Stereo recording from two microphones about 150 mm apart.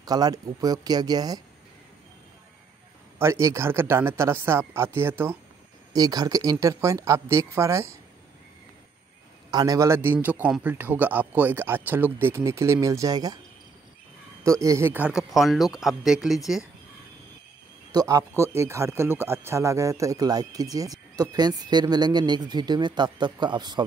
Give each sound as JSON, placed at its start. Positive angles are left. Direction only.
{"t": 0.0, "sound": "speech", "side_deg": -25}
{"t": 3.2, "sound": "a man's voice", "side_deg": -20}
{"t": 9.5, "sound": "a man's voice", "side_deg": -25}
{"t": 14.4, "sound": "speech", "side_deg": -20}
{"t": 17.9, "sound": "speech", "side_deg": -20}